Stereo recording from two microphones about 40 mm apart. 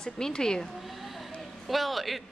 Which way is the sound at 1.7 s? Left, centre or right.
Centre.